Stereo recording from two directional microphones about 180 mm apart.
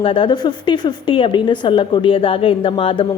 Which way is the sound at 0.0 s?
30° left (ahead or behind).